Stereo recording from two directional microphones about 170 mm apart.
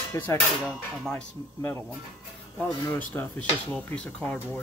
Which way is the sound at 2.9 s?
10° left (ahead or behind).